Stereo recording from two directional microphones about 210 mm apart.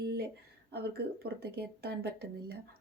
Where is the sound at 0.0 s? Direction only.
50° right (ahead or behind).